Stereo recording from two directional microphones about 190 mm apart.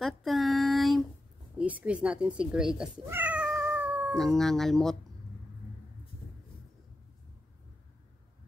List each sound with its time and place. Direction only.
0.0 s female singing: centre (ahead or behind)
1.6 s speech: 5° right (ahead or behind)
4.1 s speech: centre (ahead or behind)